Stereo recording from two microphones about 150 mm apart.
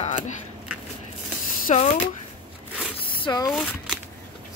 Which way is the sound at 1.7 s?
50° left (ahead or behind).